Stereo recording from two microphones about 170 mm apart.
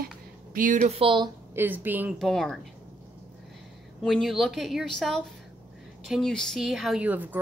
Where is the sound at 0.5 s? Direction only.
50° right (ahead or behind); by 1.3 s 30° right (ahead or behind).